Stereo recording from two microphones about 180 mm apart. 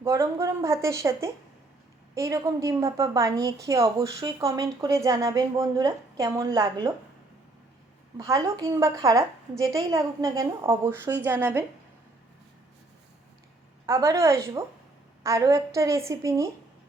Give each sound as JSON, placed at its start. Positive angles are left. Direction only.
{"t": 0.0, "sound": "a woman's voice", "side_deg": -15}
{"t": 8.2, "sound": "a woman's voice", "side_deg": -20}
{"t": 13.8, "sound": "speech", "side_deg": -15}